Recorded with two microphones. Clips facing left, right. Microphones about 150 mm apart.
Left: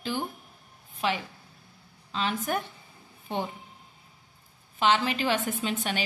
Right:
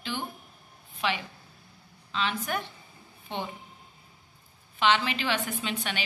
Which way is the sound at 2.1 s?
40° left (ahead or behind).